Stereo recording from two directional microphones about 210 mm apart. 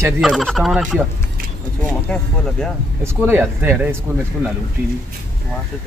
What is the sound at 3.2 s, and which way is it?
Speech, 10° right (ahead or behind).